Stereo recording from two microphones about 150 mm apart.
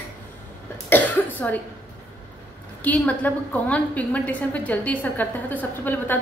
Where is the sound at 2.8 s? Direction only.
10° left (ahead or behind).